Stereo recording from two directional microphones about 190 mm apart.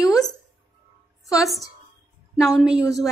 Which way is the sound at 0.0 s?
20° left (ahead or behind).